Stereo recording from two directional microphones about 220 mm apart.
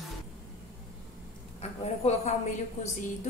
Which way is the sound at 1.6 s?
30° left (ahead or behind).